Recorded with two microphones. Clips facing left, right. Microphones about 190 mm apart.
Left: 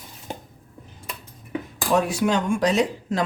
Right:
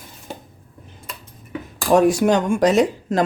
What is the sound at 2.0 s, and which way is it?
Speech, 45° right (ahead or behind).